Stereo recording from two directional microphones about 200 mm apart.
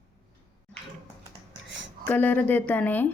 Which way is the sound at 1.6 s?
65° right (ahead or behind).